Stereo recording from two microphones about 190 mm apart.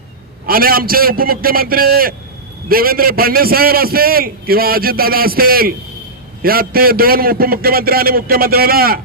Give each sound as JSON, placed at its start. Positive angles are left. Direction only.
{"t": 0.4, "sound": "a man's voice", "side_deg": -50}